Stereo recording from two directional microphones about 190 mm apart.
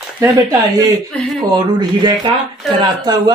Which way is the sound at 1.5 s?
20° right (ahead or behind).